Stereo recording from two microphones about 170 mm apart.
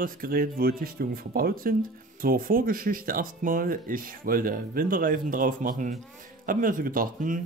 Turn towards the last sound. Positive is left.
turn(degrees=-55)  # may be behind; listen again after turning